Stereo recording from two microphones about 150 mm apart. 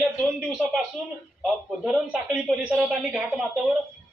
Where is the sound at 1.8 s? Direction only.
5° right (ahead or behind).